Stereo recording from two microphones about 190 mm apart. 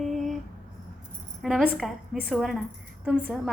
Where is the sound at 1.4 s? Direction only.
Centre (ahead or behind).